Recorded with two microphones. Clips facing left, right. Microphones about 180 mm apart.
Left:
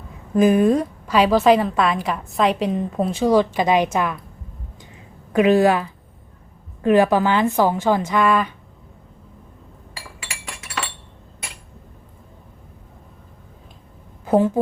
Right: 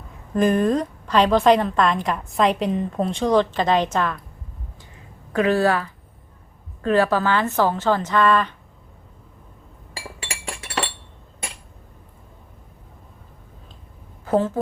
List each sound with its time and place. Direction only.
0.3 s a woman's voice: 10° left (ahead or behind)
5.3 s speech: 15° left (ahead or behind)
10.2 s chink: 30° right (ahead or behind)
14.3 s speech: 15° left (ahead or behind)